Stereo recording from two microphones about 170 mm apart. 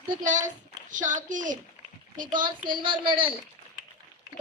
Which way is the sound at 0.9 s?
50° right (ahead or behind).